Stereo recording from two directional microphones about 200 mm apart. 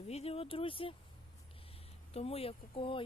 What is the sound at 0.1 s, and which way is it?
Speech, 30° left (ahead or behind).